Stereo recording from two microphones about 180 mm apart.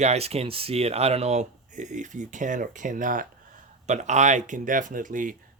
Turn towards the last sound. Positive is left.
turn(degrees=-45)  # may be behind; listen again after turning